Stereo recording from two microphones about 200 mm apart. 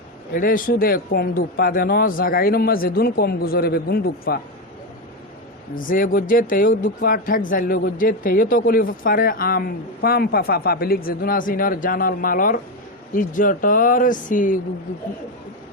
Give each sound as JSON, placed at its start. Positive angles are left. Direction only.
{"t": 0.3, "sound": "speech", "side_deg": 45}
{"t": 5.7, "sound": "speech", "side_deg": 45}